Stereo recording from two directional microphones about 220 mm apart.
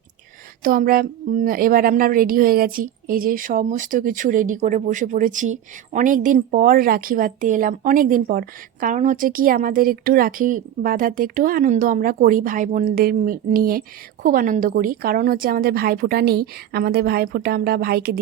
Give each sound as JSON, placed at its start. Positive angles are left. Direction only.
{"t": 0.6, "sound": "a woman's voice", "side_deg": -40}